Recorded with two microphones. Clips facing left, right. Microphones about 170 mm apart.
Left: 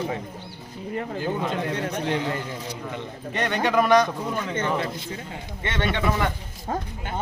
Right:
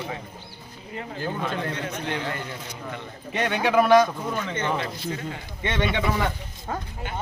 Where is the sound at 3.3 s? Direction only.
5° right (ahead or behind).